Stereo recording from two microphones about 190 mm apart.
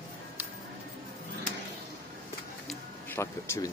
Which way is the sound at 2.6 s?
10° left (ahead or behind).